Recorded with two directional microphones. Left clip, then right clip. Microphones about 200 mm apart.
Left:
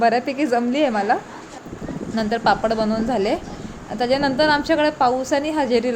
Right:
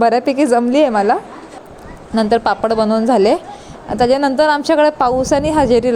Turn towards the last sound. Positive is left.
turn(degrees=-40)  # may be behind; listen again after turning